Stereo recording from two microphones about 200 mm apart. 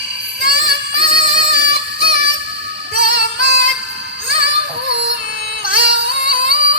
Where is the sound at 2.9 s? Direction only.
60° right (ahead or behind).